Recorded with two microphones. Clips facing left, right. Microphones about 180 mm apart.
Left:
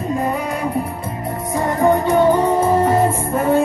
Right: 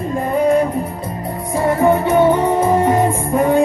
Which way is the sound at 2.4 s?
10° right (ahead or behind).